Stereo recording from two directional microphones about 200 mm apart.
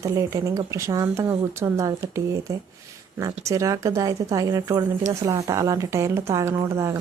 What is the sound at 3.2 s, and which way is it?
A woman's voice, 15° right (ahead or behind).